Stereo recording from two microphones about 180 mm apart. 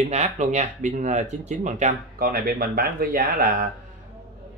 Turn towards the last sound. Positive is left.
turn(degrees=-50)  # may be behind; listen again after turning